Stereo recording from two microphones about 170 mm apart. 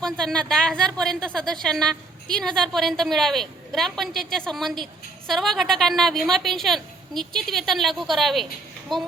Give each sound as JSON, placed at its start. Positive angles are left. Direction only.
{"t": 0.0, "sound": "a woman's voice", "side_deg": 5}